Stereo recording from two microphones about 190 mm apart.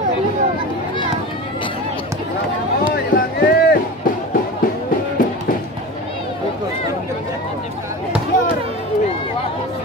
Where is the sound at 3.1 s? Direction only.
50° left (ahead or behind).